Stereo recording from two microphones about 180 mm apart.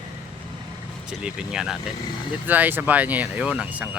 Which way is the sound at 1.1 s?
5° right (ahead or behind).